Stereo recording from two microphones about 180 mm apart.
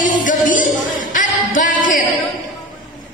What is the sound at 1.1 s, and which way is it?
Music, 45° left (ahead or behind).